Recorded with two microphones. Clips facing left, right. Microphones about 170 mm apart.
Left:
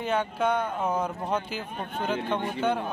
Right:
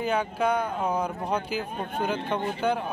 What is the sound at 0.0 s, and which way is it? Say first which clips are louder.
Speech: right 1 dB; centre (ahead or behind).